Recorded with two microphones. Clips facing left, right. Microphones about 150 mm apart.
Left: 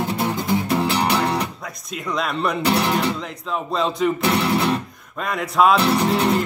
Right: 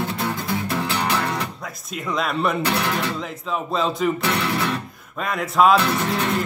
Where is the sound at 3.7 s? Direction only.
Centre (ahead or behind).